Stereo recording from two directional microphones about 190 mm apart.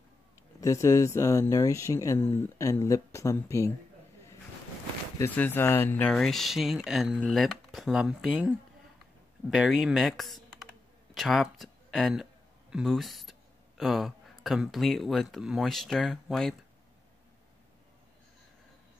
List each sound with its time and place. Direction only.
0.6 s speech: 15° left (ahead or behind)
5.2 s speech: 10° left (ahead or behind)